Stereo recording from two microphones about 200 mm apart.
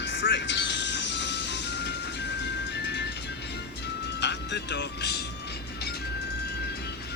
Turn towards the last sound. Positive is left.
turn(degrees=55)  # may be behind; listen again after turning